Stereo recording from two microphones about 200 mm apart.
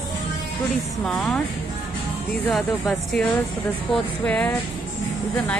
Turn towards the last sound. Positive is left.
turn(degrees=5)  # may be behind; listen again after turning